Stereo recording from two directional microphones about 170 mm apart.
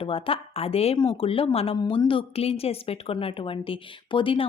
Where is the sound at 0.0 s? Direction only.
35° left (ahead or behind).